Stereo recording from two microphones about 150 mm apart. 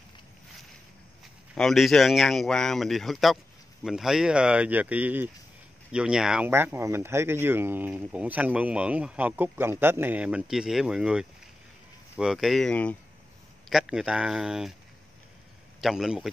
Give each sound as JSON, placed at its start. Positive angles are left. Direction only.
{"t": 1.5, "sound": "speech", "side_deg": 0}
{"t": 15.8, "sound": "speech", "side_deg": -5}